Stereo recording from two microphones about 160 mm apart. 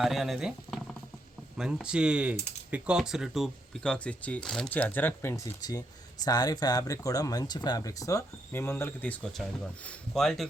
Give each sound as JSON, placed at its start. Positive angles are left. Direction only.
{"t": 0.0, "sound": "speech", "side_deg": 0}